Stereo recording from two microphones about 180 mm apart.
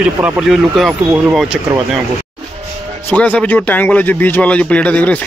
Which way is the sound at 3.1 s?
10° left (ahead or behind).